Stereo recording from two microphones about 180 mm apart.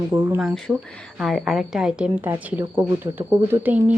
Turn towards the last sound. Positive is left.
turn(degrees=-10)  # may be behind; listen again after turning